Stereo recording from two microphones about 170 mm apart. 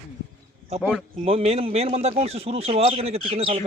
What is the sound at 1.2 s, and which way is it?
A man's voice, 35° right (ahead or behind).